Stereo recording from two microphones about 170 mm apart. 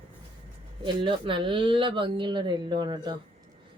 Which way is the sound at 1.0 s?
30° right (ahead or behind).